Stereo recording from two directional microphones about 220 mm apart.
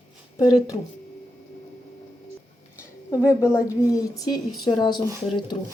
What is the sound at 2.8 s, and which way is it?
A woman's voice, 15° left (ahead or behind).